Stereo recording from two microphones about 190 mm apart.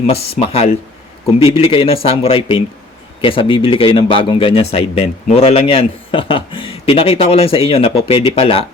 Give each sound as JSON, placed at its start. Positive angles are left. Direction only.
{"t": 0.1, "sound": "speech", "side_deg": 30}